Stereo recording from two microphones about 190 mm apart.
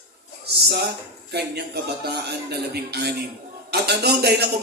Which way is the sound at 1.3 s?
60° right (ahead or behind).